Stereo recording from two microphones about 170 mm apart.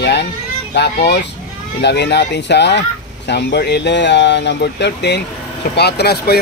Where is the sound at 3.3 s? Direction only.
80° left.